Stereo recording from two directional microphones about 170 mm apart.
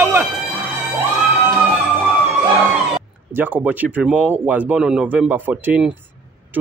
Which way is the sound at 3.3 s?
10° right (ahead or behind).